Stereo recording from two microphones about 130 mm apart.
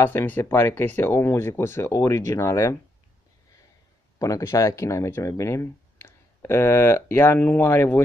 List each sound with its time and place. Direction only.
0.0 s speech: 20° left (ahead or behind)
4.2 s speech: 25° left (ahead or behind)